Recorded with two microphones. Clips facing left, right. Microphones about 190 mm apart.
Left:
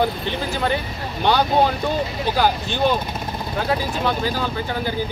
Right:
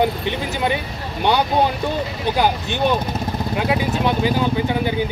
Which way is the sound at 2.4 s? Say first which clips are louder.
Even; 15° right (ahead or behind).